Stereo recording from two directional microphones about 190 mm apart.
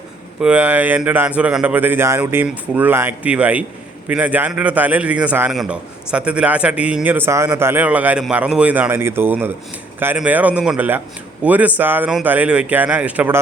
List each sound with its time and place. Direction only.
0.4 s a man's voice: 5° right (ahead or behind)